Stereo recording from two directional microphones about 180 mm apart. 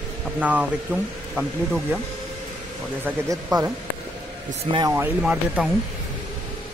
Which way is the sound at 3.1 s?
10° right (ahead or behind).